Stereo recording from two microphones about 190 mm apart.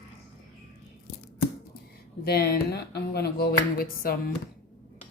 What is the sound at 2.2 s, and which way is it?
Speech, 55° left (ahead or behind).